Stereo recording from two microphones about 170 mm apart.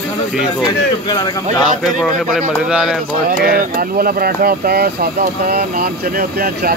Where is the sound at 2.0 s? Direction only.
5° right (ahead or behind).